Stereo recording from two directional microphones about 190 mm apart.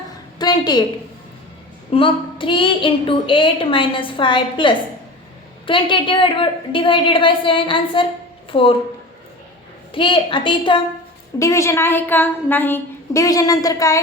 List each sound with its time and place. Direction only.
0.3 s a sound: 20° left (ahead or behind)
1.9 s a woman's voice: 25° left (ahead or behind)
9.9 s a woman's voice: 25° left (ahead or behind)
11.3 s a woman's voice: 15° left (ahead or behind)